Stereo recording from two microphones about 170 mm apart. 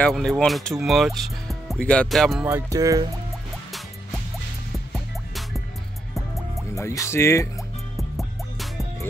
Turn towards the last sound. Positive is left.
turn(degrees=15)  # may be behind; listen again after turning